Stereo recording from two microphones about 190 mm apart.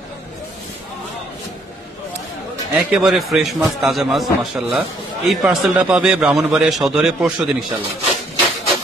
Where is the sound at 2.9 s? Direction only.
Centre (ahead or behind).